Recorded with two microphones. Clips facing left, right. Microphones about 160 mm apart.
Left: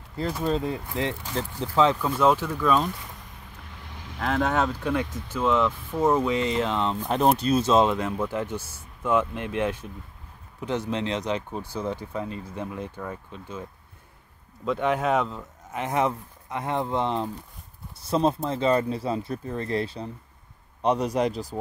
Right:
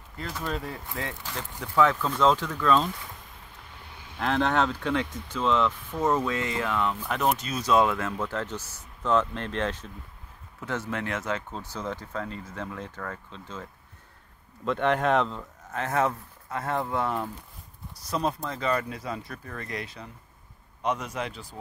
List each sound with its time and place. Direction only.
0.4 s speech: 25° left (ahead or behind); by 2.9 s 10° left (ahead or behind)
4.2 s speech: 5° left (ahead or behind)
15.7 s a man's voice: 15° left (ahead or behind); by 21.5 s 40° left (ahead or behind)